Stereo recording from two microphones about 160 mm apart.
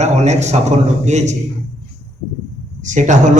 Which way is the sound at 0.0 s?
45° right (ahead or behind).